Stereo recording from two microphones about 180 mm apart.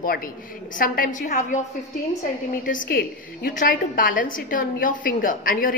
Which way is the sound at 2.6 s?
50° left (ahead or behind).